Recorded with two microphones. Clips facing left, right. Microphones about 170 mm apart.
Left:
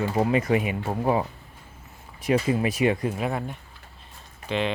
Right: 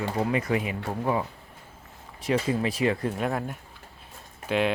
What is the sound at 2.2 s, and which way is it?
Speech, 15° left (ahead or behind).